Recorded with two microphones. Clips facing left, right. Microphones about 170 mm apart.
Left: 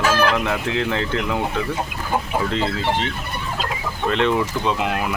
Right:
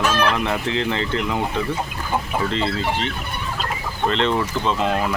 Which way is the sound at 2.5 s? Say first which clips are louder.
Even; 10° left (ahead or behind).